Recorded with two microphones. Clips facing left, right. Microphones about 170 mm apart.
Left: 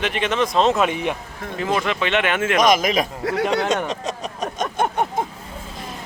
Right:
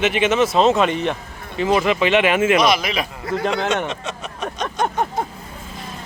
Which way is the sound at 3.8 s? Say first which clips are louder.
Left 2 dB; 35° left (ahead or behind).